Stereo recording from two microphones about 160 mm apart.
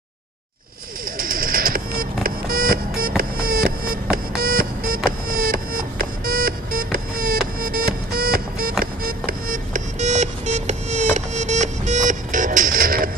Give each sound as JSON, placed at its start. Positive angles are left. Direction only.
{"t": 1.1, "sound": "music", "side_deg": -65}